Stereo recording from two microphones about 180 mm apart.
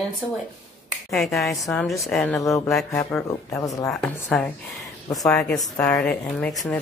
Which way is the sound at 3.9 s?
5° left (ahead or behind).